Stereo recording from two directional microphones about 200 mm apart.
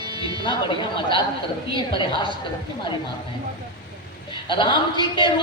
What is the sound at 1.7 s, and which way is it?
Mantra, 25° left (ahead or behind).